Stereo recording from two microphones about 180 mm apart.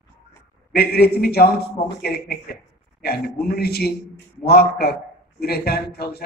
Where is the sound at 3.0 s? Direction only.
60° left (ahead or behind).